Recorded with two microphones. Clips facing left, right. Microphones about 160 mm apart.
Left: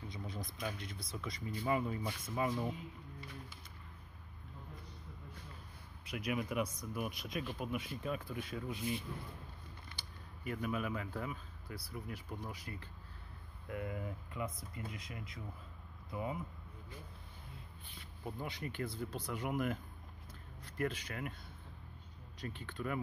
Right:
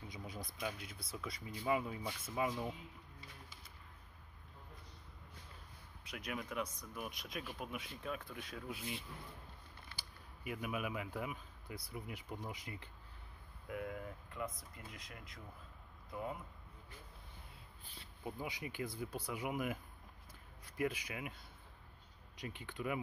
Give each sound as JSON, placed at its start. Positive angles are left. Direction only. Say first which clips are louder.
{"t": 0.1, "sound": "a sound", "louder": "left 2 dB", "side_deg": -10}
{"t": 0.6, "sound": "speech", "louder": "even", "side_deg": -5}
{"t": 6.0, "sound": "speech", "louder": "left 6 dB", "side_deg": 5}
{"t": 13.7, "sound": "speech", "louder": "left 2 dB", "side_deg": 0}
{"t": 18.2, "sound": "speech", "louder": "left 1 dB", "side_deg": -10}
{"t": 22.4, "sound": "speech", "louder": "left 1 dB", "side_deg": -15}